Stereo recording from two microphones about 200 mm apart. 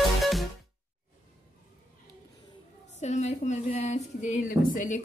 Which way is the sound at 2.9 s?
35° left (ahead or behind).